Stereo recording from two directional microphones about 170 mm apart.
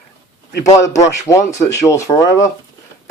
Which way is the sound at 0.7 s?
20° left (ahead or behind).